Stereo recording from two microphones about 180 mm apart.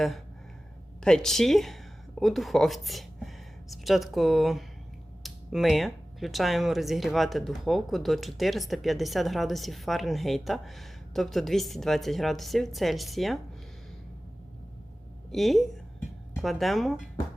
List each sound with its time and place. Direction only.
1.0 s speech: 5° left (ahead or behind)
15.3 s speech: centre (ahead or behind)